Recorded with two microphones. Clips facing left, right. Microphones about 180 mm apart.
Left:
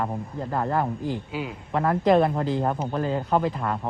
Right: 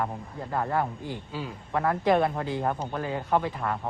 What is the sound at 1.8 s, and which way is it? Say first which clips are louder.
Speech: left 4 dB; 30° left (ahead or behind).